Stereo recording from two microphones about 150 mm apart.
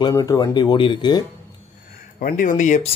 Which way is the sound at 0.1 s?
25° left (ahead or behind).